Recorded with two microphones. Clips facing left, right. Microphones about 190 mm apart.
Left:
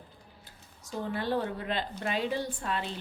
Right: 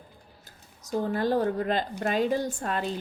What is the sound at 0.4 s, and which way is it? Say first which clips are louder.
Speech: right 1 dB; 40° right (ahead or behind).